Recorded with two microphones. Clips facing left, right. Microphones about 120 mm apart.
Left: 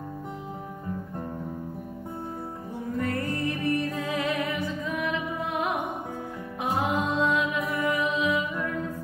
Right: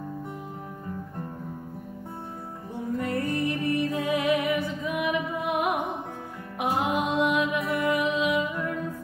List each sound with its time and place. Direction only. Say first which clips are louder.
3.0 s music: right 1 dB; 20° right (ahead or behind)